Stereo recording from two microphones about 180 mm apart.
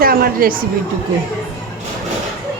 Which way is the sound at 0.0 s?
55° right (ahead or behind).